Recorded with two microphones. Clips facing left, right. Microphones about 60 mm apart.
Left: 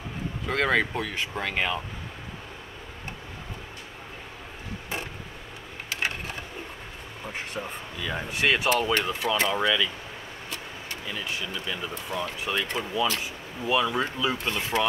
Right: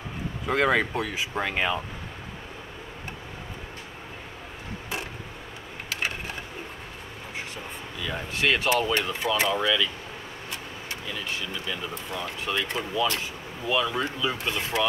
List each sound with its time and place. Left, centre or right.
0.5 s speech: centre
8.0 s speech: centre
11.5 s speech: centre